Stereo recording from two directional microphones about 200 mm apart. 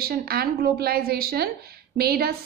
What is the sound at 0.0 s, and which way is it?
A woman's voice, 50° right (ahead or behind).